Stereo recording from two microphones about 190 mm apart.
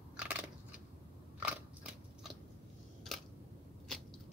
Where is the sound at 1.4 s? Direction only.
5° right (ahead or behind).